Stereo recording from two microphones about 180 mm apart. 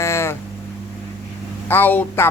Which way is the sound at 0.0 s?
15° left (ahead or behind).